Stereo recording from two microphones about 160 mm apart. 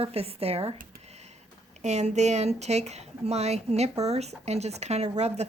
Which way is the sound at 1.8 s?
45° right (ahead or behind).